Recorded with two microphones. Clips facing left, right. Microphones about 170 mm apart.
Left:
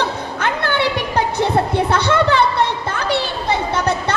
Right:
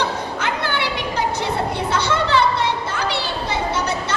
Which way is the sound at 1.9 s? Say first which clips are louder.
Left 4 dB; 55° left (ahead or behind).